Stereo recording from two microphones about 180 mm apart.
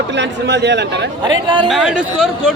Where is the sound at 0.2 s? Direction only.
75° right (ahead or behind).